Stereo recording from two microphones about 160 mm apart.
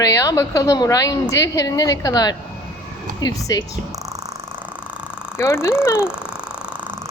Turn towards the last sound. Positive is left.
turn(degrees=-10)  # may be behind; listen again after turning